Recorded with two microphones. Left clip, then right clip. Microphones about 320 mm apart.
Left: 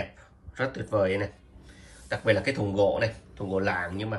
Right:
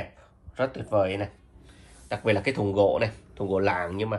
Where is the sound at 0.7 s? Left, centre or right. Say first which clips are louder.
Even; centre.